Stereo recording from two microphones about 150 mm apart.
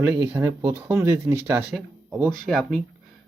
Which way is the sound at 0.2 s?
25° right (ahead or behind).